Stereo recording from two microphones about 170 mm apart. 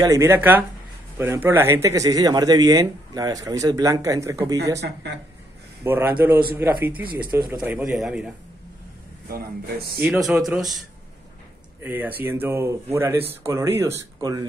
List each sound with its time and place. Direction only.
0.0 s a man's voice: 15° right (ahead or behind)
4.7 s speech: 90° right
5.9 s a man's voice: 10° right (ahead or behind)
10.0 s a man's voice: centre (ahead or behind)
11.8 s speech: 10° right (ahead or behind)